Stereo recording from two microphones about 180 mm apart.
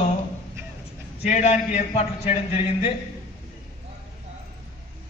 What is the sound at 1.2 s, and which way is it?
A man's voice, 40° left (ahead or behind).